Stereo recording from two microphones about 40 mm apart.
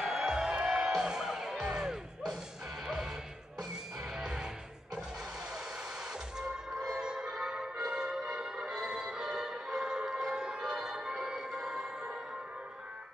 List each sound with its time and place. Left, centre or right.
0.0 s music: centre
7.0 s music: centre